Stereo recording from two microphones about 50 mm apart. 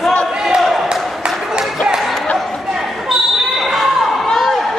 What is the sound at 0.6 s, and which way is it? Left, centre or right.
Basketball bounce, centre.